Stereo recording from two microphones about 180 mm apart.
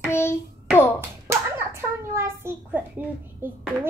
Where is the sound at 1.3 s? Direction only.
15° right (ahead or behind).